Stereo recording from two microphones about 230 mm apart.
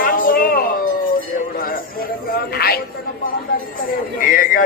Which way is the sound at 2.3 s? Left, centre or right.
Left.